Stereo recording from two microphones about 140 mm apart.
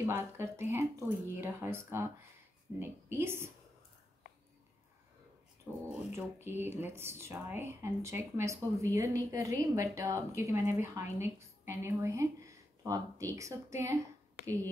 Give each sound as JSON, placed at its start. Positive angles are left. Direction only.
{"t": 0.0, "sound": "speech", "side_deg": -15}
{"t": 6.1, "sound": "a woman's voice", "side_deg": -15}